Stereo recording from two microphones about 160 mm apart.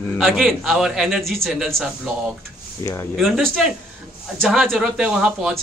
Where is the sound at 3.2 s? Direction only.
Centre (ahead or behind).